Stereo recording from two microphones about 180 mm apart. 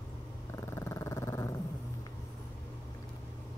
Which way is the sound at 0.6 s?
15° left (ahead or behind).